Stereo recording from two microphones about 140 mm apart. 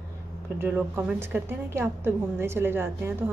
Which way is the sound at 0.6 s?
15° right (ahead or behind).